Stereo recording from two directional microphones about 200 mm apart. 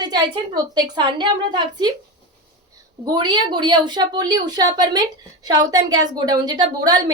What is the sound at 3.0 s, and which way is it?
A woman's voice, 20° right (ahead or behind).